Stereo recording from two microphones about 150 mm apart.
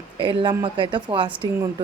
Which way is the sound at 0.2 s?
35° right (ahead or behind).